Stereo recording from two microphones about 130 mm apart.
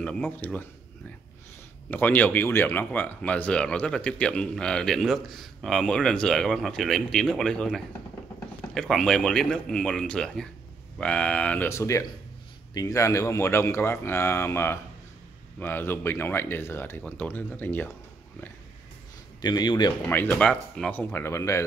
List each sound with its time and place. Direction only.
0.0 s speech: 10° left (ahead or behind)
1.9 s speech: 15° left (ahead or behind)
19.4 s speech: 35° left (ahead or behind)
20.1 s speech: 15° left (ahead or behind)